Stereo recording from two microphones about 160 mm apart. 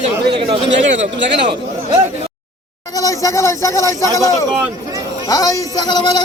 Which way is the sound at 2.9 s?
20° left (ahead or behind).